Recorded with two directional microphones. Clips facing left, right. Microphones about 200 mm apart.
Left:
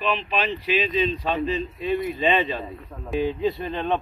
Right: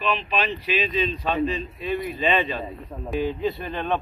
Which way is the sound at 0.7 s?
25° left (ahead or behind).